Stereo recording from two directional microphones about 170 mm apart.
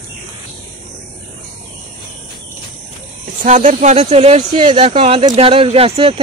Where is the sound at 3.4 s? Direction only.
45° right (ahead or behind); by 4.9 s 25° right (ahead or behind).